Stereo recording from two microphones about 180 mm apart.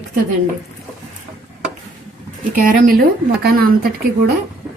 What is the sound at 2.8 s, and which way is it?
Speech, 55° right (ahead or behind).